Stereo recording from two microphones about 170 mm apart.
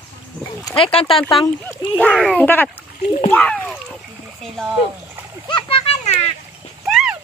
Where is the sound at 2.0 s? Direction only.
Centre (ahead or behind).